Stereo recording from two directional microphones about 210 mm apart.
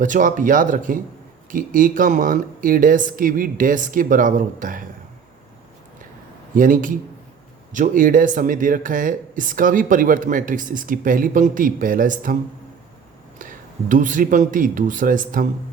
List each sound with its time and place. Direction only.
0.0 s speech: 40° right (ahead or behind)
6.5 s speech: 40° right (ahead or behind)
13.4 s speech: 40° right (ahead or behind)